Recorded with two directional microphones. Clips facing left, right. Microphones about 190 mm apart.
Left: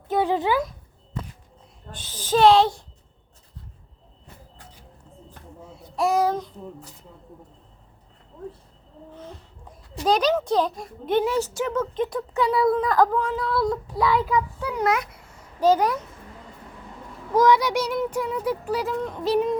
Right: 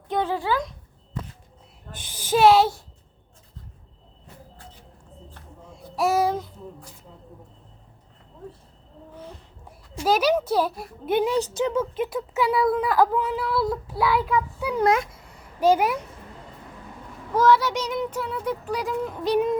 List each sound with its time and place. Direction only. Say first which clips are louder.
0.3 s child singing: left 3 dB; 15° left (ahead or behind)
2.1 s a child's voice: even; 10° right (ahead or behind)
5.3 s a sound: left 6 dB; centre (ahead or behind)
9.1 s a child's voice: even; 10° right (ahead or behind)
12.7 s child singing: left 1 dB; 5° right (ahead or behind)
14.8 s speech: right 3 dB; 25° right (ahead or behind)
15.6 s a child's voice: even; 10° right (ahead or behind)
17.3 s child singing: left 1 dB; 15° left (ahead or behind)